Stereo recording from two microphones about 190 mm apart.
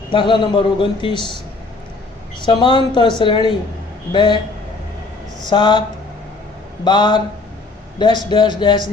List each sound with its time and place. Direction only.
0.1 s a man's voice: 25° left (ahead or behind)
2.4 s a man's voice: 25° left (ahead or behind)
5.5 s a man's voice: 25° left (ahead or behind)
6.8 s a man's voice: 25° left (ahead or behind)